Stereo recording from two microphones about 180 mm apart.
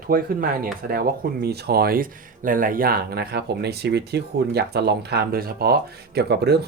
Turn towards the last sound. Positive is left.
turn(degrees=-65)  # may be behind; listen again after turning